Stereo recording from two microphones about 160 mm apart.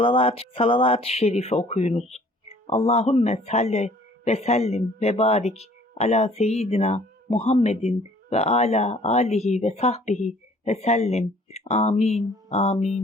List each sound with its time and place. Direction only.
0.0 s a man's voice: 35° left (ahead or behind)